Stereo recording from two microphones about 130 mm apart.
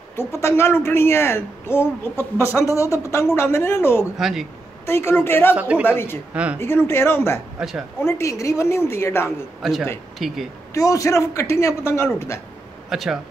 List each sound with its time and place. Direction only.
0.1 s speech: 20° left (ahead or behind)
4.2 s speech: 5° right (ahead or behind)
4.8 s a woman's voice: 20° left (ahead or behind)
5.6 s speech: 10° right (ahead or behind)
5.9 s speech: 20° left (ahead or behind)
6.3 s speech: 10° right (ahead or behind)
6.6 s speech: 20° left (ahead or behind)
7.6 s speech: 5° right (ahead or behind)
8.0 s speech: 20° left (ahead or behind)
9.6 s speech: centre (ahead or behind)
10.7 s speech: 25° left (ahead or behind)
12.9 s speech: centre (ahead or behind)